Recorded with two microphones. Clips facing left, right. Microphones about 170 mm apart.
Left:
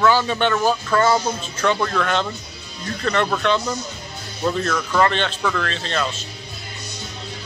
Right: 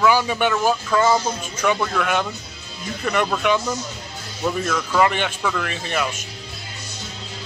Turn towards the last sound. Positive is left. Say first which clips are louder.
# even
turn(degrees=-15)  # may be behind; listen again after turning